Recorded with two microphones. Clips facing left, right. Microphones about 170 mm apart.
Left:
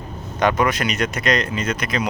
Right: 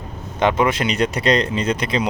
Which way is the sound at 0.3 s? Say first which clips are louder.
Right 1 dB; 25° right (ahead or behind).